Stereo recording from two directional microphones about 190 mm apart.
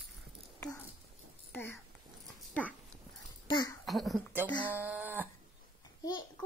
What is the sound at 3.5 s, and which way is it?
Speech, 20° left (ahead or behind).